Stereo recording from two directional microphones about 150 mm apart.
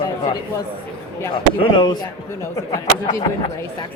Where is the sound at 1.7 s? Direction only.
30° left (ahead or behind).